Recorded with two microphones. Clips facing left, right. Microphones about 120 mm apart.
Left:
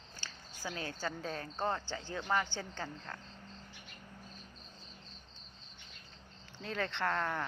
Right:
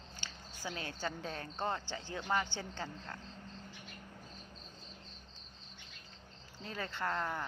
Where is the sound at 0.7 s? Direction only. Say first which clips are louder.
Left 1 dB; 40° left (ahead or behind).